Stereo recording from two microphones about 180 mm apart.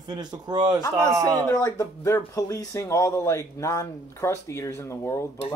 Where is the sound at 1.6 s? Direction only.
20° left (ahead or behind).